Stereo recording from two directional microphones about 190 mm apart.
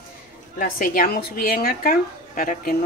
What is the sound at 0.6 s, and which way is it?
A woman's voice, 50° left (ahead or behind).